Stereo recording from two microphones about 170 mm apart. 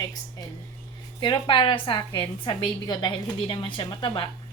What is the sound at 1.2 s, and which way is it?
A woman's voice, 30° left (ahead or behind).